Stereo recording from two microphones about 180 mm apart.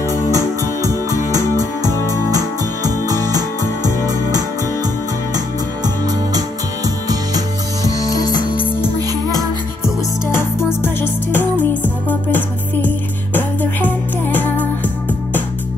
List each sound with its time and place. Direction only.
0.1 s music: 20° right (ahead or behind)
7.1 s music: 20° right (ahead or behind)
8.0 s music: 20° left (ahead or behind)
10.3 s music: 15° left (ahead or behind)